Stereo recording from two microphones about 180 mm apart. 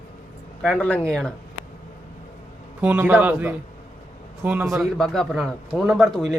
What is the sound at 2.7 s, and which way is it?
Speech, 10° right (ahead or behind).